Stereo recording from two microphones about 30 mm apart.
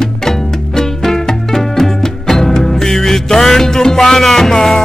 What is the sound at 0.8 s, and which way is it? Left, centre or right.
Music, centre.